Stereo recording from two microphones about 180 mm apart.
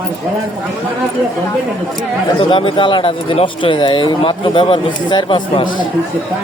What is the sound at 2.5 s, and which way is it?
Speech, 30° left (ahead or behind).